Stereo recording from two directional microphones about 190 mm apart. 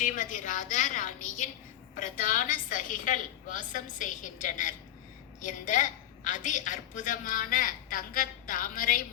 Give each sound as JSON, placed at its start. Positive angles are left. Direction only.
{"t": 0.0, "sound": "a woman's voice", "side_deg": 45}